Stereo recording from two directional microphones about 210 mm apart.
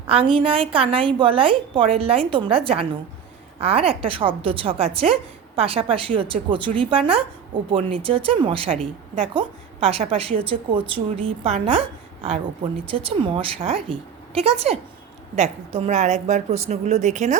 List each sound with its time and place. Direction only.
0.1 s a woman's voice: 25° right (ahead or behind)